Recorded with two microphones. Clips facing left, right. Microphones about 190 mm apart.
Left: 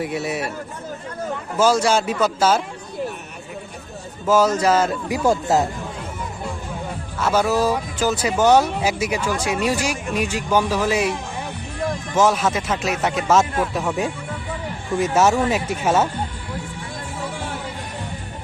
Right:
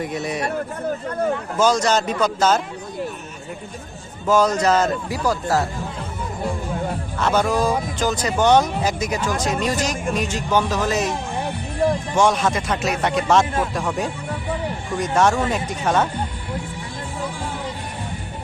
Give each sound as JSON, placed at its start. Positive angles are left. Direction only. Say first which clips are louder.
{"t": 0.0, "sound": "speech", "louder": "even", "side_deg": 5}
{"t": 1.5, "sound": "speech", "louder": "left 2 dB", "side_deg": 10}
{"t": 4.3, "sound": "speech", "louder": "even", "side_deg": 5}
{"t": 5.1, "sound": "speech", "louder": "left 6 dB", "side_deg": 20}
{"t": 7.2, "sound": "speech", "louder": "left 1 dB", "side_deg": 5}
{"t": 12.1, "sound": "speech", "louder": "even", "side_deg": 5}